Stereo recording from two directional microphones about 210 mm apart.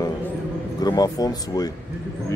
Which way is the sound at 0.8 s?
20° left (ahead or behind).